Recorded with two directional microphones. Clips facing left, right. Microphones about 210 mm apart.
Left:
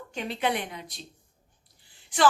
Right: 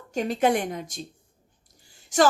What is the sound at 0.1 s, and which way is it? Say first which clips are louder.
Speech: right 7 dB; 45° right (ahead or behind).